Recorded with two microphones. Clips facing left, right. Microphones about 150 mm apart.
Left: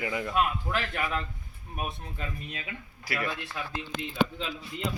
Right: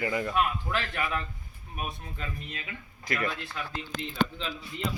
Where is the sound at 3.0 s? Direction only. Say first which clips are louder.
Right 1 dB; 10° left (ahead or behind).